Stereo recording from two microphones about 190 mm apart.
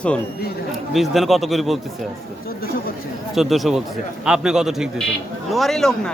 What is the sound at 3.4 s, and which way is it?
Speech, centre (ahead or behind).